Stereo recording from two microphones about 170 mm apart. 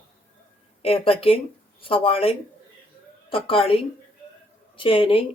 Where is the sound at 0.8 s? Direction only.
35° left (ahead or behind).